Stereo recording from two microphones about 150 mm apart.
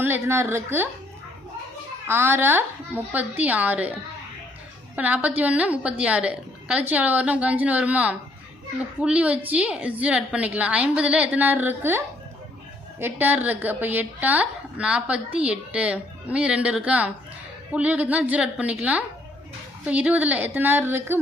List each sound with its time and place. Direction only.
0.0 s a woman's voice: 15° right (ahead or behind)
2.0 s a woman's voice: 15° right (ahead or behind)
4.9 s a woman's voice: 10° right (ahead or behind)